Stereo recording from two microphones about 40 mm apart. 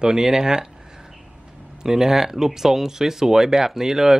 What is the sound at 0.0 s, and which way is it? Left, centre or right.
Speech, centre.